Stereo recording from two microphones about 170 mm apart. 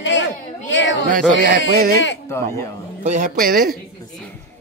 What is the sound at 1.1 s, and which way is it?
Speech, 55° right (ahead or behind).